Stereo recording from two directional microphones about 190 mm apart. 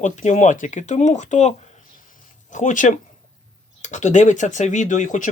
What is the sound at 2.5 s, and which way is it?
Speech, 40° left (ahead or behind).